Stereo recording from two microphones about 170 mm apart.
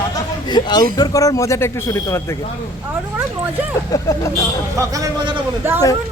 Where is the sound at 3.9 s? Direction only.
20° left (ahead or behind).